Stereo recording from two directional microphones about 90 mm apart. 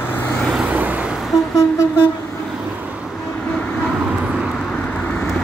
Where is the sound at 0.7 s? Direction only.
15° right (ahead or behind).